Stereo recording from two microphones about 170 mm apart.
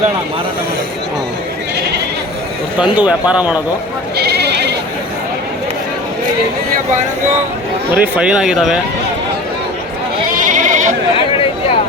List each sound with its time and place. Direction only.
2.7 s speech: 5° right (ahead or behind)
4.2 s sheep: 75° right (ahead or behind)
7.9 s speech: 10° right (ahead or behind)
10.3 s sheep: 50° right (ahead or behind)